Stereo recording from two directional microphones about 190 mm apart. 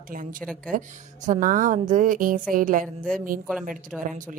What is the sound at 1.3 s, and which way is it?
A woman's voice, 45° right (ahead or behind).